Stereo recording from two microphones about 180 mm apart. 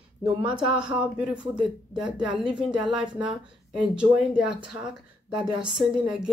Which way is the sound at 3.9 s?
5° right (ahead or behind).